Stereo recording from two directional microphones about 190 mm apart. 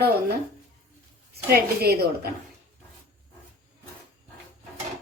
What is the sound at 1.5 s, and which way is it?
Speech, 55° right (ahead or behind).